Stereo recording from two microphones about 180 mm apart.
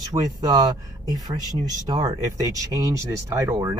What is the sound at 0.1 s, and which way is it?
A man's voice, 20° right (ahead or behind).